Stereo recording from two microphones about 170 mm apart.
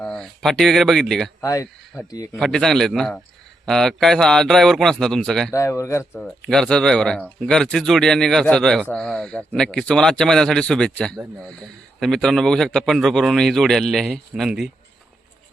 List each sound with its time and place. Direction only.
0.0 s speech: 5° left (ahead or behind)
1.4 s a man's voice: 20° left (ahead or behind)
2.4 s speech: 5° left (ahead or behind)
5.5 s speech: 20° left (ahead or behind)
6.1 s speech: 5° left (ahead or behind)